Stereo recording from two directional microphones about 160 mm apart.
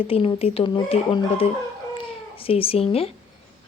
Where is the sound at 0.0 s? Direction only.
35° left (ahead or behind).